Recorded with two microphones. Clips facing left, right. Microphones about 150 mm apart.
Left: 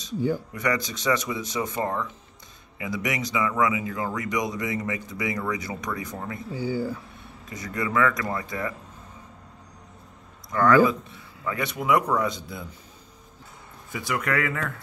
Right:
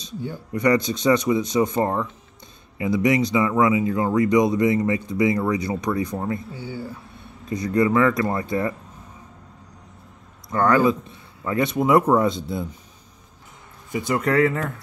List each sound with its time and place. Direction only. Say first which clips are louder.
0.5 s speech: right 8 dB; 25° right (ahead or behind)
7.4 s speech: right 10 dB; 25° right (ahead or behind)
10.5 s speech: right 1 dB; 25° right (ahead or behind)
13.9 s speech: right 7 dB; 25° right (ahead or behind)